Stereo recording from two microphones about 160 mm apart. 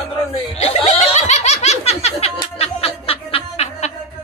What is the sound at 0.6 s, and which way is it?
Laughter, 45° left (ahead or behind).